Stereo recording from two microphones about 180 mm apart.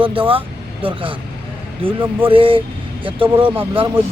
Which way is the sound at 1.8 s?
30° right (ahead or behind).